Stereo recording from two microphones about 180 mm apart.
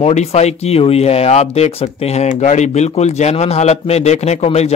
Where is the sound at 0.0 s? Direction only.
35° left (ahead or behind).